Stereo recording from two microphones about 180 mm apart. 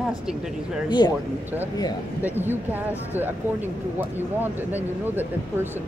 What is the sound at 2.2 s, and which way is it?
Speech, 10° right (ahead or behind).